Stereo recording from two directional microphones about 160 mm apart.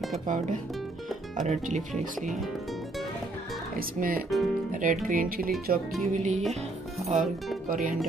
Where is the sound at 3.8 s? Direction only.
65° right (ahead or behind).